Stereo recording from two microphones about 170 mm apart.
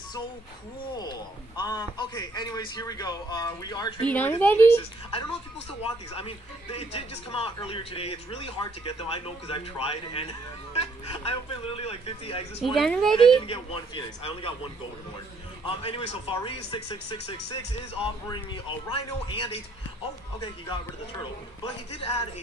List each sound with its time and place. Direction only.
0.9 s a man's voice: 25° left (ahead or behind)
4.0 s a woman's voice: 10° left (ahead or behind)
5.7 s speech: 35° left (ahead or behind)
12.7 s a woman's voice: centre (ahead or behind)
13.1 s speech: 30° left (ahead or behind)
15.6 s speech: 35° left (ahead or behind)
21.6 s speech: 35° left (ahead or behind)